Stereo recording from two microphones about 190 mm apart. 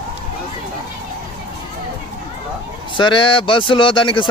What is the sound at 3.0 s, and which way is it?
Speech, 25° left (ahead or behind).